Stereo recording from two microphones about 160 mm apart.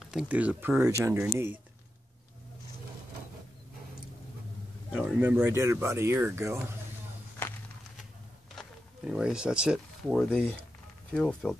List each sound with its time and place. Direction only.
0.0 s speech: 5° right (ahead or behind)
4.9 s speech: 10° right (ahead or behind)
7.4 s walk: 15° left (ahead or behind)
8.5 s speech: 5° right (ahead or behind)
10.3 s speech: 10° left (ahead or behind)